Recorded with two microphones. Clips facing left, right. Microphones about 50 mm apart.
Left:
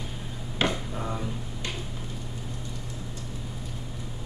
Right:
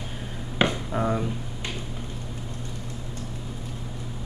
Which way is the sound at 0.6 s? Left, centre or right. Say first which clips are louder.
Right 3 dB; centre.